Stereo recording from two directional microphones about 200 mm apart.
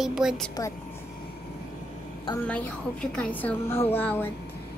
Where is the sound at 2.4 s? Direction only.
5° left (ahead or behind).